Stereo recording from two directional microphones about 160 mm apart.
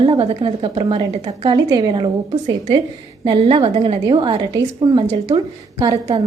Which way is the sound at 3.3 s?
35° right (ahead or behind).